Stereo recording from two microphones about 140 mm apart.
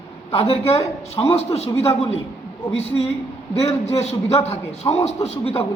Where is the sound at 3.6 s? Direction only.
45° left (ahead or behind).